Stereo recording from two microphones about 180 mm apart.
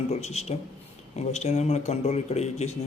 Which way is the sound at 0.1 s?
35° left (ahead or behind).